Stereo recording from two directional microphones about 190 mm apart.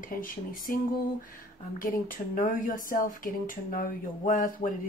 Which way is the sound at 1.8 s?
45° left (ahead or behind).